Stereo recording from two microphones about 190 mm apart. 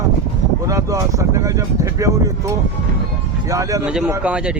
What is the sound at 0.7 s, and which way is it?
Speech, 15° right (ahead or behind).